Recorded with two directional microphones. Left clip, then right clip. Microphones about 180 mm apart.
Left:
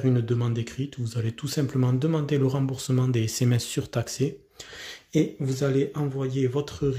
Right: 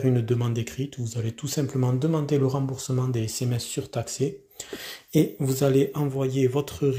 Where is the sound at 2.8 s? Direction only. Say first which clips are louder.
Left 2 dB; 20° left (ahead or behind).